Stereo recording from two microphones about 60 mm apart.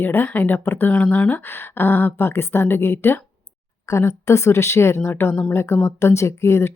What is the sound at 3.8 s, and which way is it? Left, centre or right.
Speech, left.